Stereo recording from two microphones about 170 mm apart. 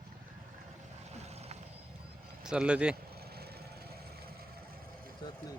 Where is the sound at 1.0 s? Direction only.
40° right (ahead or behind).